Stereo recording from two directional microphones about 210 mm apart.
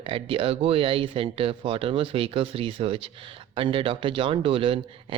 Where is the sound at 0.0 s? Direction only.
25° right (ahead or behind).